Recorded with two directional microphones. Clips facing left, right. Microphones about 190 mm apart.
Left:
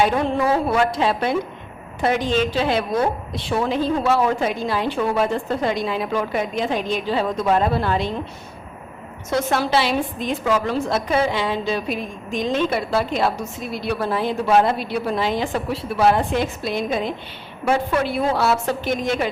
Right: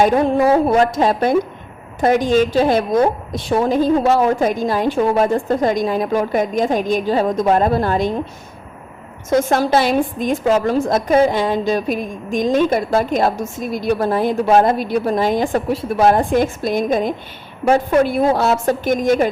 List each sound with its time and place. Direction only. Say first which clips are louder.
0.0 s a woman's voice: right 5 dB; 40° right (ahead or behind)
9.3 s a woman's voice: right 5 dB; 45° right (ahead or behind)